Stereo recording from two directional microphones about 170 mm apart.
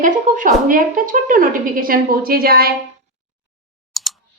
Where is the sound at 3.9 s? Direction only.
Centre (ahead or behind).